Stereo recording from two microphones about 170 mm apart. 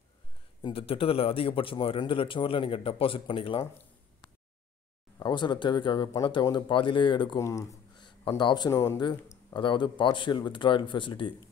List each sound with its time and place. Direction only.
0.6 s speech: 30° left (ahead or behind)
5.2 s speech: 25° left (ahead or behind)